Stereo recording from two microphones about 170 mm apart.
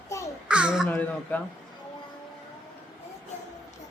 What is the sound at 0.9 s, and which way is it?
Speech, 10° left (ahead or behind).